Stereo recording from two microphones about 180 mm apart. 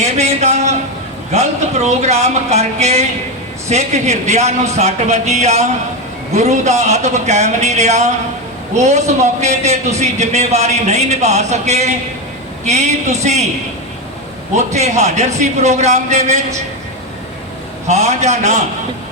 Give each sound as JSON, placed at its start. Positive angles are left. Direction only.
{"t": 0.0, "sound": "a man's voice", "side_deg": -40}
{"t": 14.5, "sound": "a man's voice", "side_deg": -40}
{"t": 17.8, "sound": "a man's voice", "side_deg": -40}